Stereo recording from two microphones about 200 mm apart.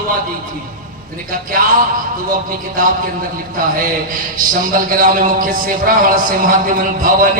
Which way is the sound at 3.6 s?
45° right (ahead or behind).